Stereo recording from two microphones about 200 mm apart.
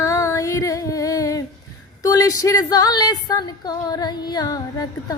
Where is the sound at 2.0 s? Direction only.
15° left (ahead or behind).